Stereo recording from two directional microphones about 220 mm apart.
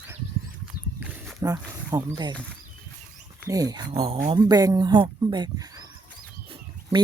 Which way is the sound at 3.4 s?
15° right (ahead or behind).